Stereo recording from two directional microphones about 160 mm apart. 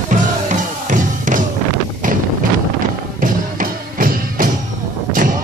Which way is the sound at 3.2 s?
60° right (ahead or behind).